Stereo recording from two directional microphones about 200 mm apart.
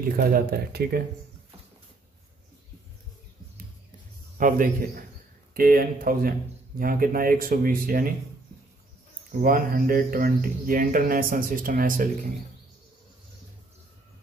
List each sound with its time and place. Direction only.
0.1 s speech: 45° right (ahead or behind)
4.4 s a man's voice: 40° right (ahead or behind)
9.4 s speech: 45° right (ahead or behind)